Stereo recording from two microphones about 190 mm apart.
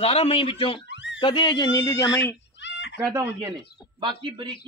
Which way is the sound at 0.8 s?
70° left (ahead or behind).